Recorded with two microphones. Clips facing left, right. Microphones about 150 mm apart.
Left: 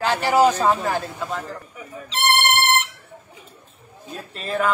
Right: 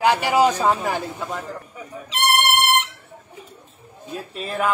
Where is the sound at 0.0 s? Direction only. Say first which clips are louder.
Even; 15° right (ahead or behind).